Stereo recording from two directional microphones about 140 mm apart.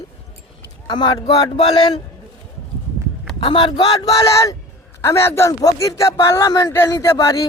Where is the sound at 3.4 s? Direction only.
35° left (ahead or behind).